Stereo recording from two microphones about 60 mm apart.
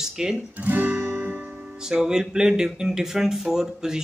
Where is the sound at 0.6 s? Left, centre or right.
Right.